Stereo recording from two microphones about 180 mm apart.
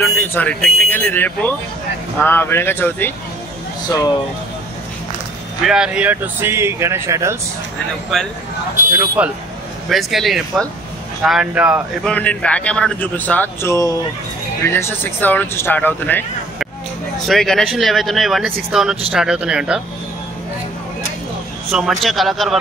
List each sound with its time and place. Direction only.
0.0 s a man's voice: 10° left (ahead or behind)
3.8 s speech: 20° left (ahead or behind)
5.6 s speech: 5° right (ahead or behind)
8.1 s speech: centre (ahead or behind)
8.9 s speech: 15° right (ahead or behind)
9.8 s speech: centre (ahead or behind)
12.0 s a man's voice: 5° left (ahead or behind)
17.3 s speech: centre (ahead or behind)
21.6 s speech: centre (ahead or behind)